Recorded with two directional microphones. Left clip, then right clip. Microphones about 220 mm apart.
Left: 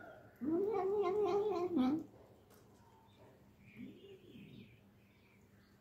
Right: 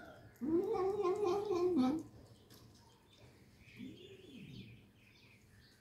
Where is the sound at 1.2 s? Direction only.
15° left (ahead or behind).